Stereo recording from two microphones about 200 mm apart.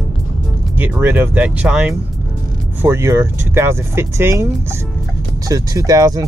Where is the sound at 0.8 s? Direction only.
10° right (ahead or behind).